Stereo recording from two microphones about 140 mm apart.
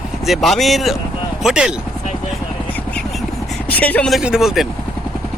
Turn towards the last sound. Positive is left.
turn(degrees=-5)  # may be behind; listen again after turning